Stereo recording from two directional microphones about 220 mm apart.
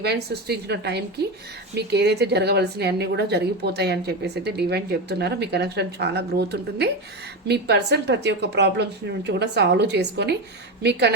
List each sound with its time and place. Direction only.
0.0 s a woman's voice: 45° right (ahead or behind)